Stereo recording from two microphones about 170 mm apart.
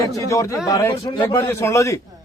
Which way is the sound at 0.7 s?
20° left (ahead or behind).